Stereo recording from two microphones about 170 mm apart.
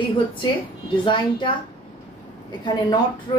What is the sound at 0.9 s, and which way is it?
Speech, 30° left (ahead or behind).